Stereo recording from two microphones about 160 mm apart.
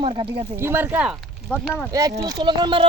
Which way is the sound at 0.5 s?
15° right (ahead or behind).